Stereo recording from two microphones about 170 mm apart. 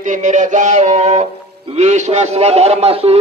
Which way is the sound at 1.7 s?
40° right (ahead or behind).